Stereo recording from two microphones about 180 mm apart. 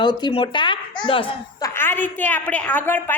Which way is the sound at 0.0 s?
25° left (ahead or behind).